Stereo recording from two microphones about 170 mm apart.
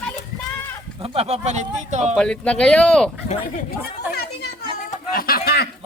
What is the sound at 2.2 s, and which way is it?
Speech, 5° left (ahead or behind).